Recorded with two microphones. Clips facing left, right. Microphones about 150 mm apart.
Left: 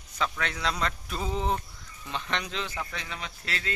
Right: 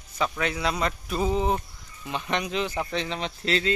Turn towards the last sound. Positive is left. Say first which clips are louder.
# right 10 dB
turn(degrees=-25)  # may be behind; listen again after turning